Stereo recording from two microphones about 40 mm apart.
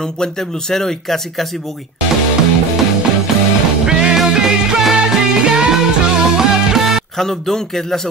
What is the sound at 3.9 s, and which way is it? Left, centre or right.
Music, right.